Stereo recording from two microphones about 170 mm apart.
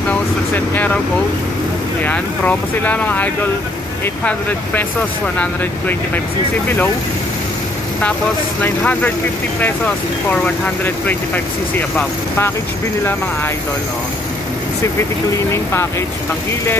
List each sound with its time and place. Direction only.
2.0 s speech: 10° left (ahead or behind)
8.6 s speech: 10° left (ahead or behind)
12.0 s speech: 15° left (ahead or behind)
15.3 s speech: 15° left (ahead or behind)